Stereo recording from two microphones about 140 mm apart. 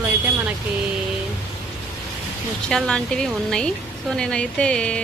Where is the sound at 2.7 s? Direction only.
5° left (ahead or behind).